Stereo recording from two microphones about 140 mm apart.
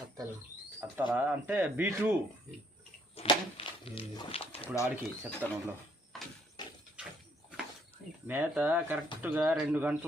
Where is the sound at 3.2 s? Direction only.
40° left (ahead or behind).